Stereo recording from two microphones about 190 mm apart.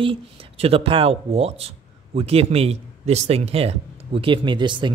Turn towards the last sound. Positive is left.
turn(degrees=-25)  # may be behind; listen again after turning